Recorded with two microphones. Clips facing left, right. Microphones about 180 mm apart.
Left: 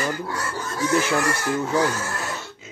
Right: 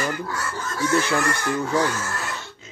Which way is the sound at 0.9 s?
5° left (ahead or behind).